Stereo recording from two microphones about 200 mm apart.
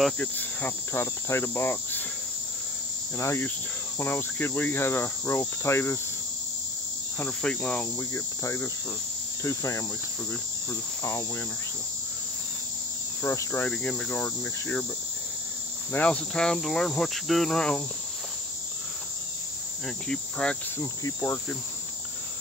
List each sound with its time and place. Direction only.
0.0 s cricket: 10° left (ahead or behind)
3.2 s cricket: 10° left (ahead or behind)
7.2 s cricket: 5° left (ahead or behind)
13.2 s cricket: 15° left (ahead or behind)
15.9 s cricket: 5° left (ahead or behind)
20.1 s cricket: 5° left (ahead or behind)
20.8 s cricket: 15° left (ahead or behind)